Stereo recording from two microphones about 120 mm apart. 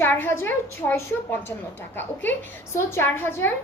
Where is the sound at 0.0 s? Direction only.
15° left (ahead or behind).